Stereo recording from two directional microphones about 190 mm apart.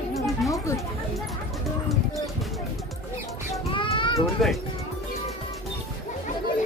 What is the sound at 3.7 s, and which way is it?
Child singing, 25° left (ahead or behind).